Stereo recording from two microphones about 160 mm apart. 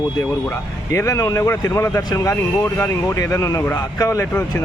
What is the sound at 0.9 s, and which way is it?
Speech, 20° left (ahead or behind).